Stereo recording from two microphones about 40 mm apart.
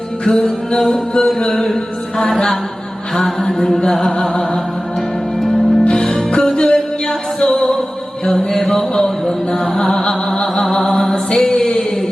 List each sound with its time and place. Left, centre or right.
0.3 s music: centre
3.8 s music: centre
5.4 s music: centre
5.9 s music: centre
10.8 s mantra: centre